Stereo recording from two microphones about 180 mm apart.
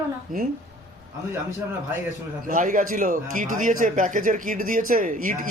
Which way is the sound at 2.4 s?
50° right (ahead or behind).